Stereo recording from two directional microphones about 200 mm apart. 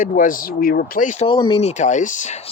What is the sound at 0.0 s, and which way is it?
Speech, 40° left (ahead or behind).